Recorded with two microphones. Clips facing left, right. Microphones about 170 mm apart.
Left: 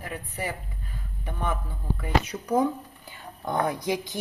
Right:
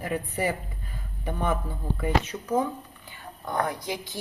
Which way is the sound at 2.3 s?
10° left (ahead or behind).